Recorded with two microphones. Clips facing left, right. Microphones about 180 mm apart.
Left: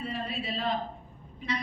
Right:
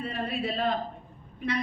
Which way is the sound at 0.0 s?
55° right (ahead or behind).